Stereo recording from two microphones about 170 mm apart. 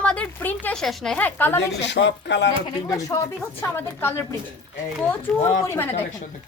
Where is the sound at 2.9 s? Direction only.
20° left (ahead or behind).